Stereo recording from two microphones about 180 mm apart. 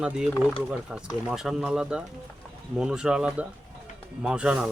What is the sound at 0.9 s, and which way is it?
Speech, 5° right (ahead or behind).